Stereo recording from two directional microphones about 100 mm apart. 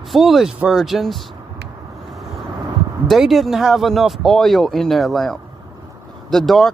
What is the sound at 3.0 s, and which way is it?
Speech, centre (ahead or behind).